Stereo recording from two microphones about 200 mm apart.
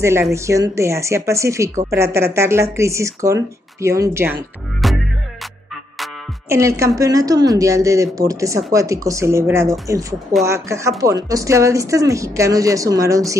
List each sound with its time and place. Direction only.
0.0 s a woman's voice: 15° right (ahead or behind)
4.8 s music: centre (ahead or behind)
6.5 s a woman's voice: 15° right (ahead or behind)